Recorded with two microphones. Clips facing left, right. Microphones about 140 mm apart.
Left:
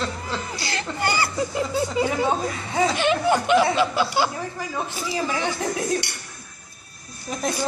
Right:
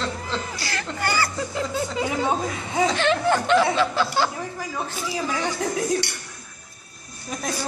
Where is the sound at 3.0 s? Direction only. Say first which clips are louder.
Even; 15° left (ahead or behind).